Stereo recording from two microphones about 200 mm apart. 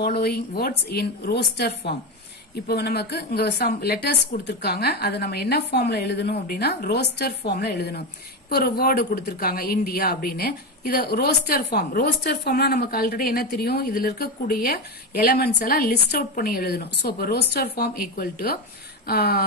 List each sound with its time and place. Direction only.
0.0 s a woman's voice: 50° left (ahead or behind)